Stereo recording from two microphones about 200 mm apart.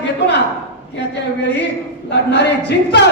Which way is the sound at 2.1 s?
60° left (ahead or behind).